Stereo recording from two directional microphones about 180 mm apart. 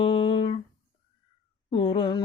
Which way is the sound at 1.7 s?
25° left (ahead or behind).